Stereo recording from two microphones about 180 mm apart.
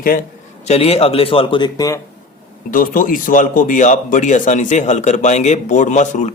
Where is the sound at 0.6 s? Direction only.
35° left (ahead or behind).